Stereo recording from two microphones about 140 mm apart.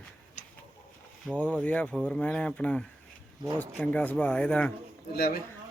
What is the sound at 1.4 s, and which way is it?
Speech, 10° left (ahead or behind).